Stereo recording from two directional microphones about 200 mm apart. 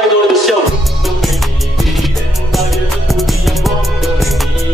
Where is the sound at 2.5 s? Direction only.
Centre (ahead or behind).